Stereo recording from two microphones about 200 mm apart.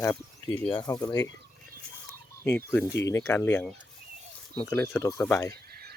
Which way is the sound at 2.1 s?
10° left (ahead or behind).